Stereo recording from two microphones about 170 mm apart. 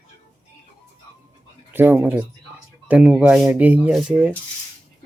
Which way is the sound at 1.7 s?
10° right (ahead or behind).